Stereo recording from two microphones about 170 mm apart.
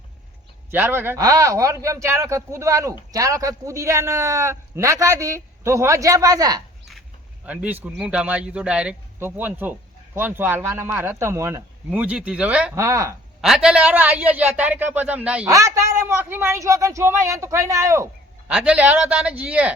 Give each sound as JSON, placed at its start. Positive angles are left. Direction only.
{"t": 0.7, "sound": "a man's voice", "side_deg": -10}
{"t": 7.4, "sound": "a man's voice", "side_deg": -10}
{"t": 12.7, "sound": "a man's voice", "side_deg": -15}
{"t": 13.4, "sound": "a man's voice", "side_deg": 0}
{"t": 15.4, "sound": "a man's voice", "side_deg": -20}